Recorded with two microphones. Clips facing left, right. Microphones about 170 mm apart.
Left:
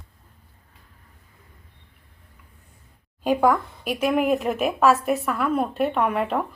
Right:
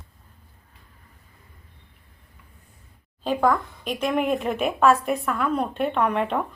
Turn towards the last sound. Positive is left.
turn(degrees=5)  # may be behind; listen again after turning